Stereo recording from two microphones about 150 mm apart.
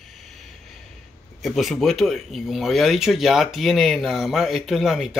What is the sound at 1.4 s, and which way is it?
Speech, centre (ahead or behind).